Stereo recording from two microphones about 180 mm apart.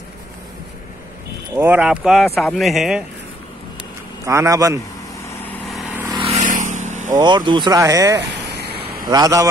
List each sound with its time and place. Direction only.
1.5 s speech: 10° right (ahead or behind)
4.3 s a man's voice: 15° right (ahead or behind)
5.5 s vehicle: centre (ahead or behind)
6.1 s vehicle: 35° right (ahead or behind)
7.1 s speech: 20° right (ahead or behind)
8.5 s vehicle: 65° right (ahead or behind)
9.1 s speech: 20° right (ahead or behind)